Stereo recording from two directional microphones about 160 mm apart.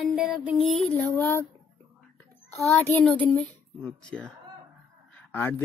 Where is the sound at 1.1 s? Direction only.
15° left (ahead or behind).